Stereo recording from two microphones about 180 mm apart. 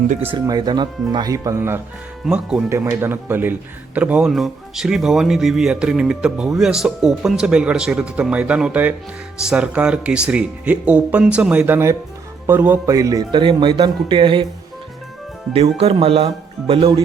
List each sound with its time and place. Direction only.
0.3 s a man's voice: 20° right (ahead or behind); by 2.6 s 5° right (ahead or behind)
2.6 s a man's voice: 15° right (ahead or behind)
15.5 s speech: 35° right (ahead or behind)